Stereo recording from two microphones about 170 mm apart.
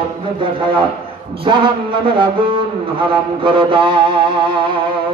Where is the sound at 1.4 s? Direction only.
30° right (ahead or behind).